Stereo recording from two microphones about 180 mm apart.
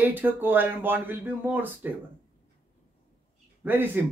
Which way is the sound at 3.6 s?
10° right (ahead or behind).